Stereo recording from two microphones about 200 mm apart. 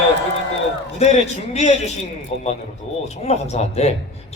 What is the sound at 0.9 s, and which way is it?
A man's voice, 35° left (ahead or behind).